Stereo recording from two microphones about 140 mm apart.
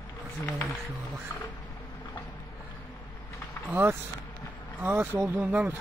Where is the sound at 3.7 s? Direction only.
15° right (ahead or behind).